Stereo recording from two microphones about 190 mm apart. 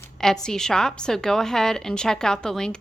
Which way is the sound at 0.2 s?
5° left (ahead or behind).